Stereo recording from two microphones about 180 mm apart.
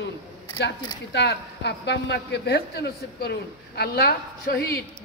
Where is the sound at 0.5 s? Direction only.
70° left (ahead or behind).